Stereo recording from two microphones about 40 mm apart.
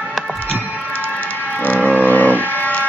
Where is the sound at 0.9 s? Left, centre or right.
Left.